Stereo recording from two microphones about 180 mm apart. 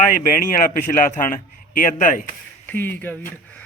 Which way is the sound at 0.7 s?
45° left (ahead or behind).